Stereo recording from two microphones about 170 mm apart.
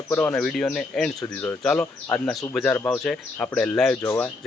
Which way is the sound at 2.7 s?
15° left (ahead or behind).